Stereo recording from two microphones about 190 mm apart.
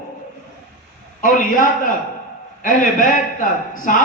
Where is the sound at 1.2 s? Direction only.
45° left (ahead or behind).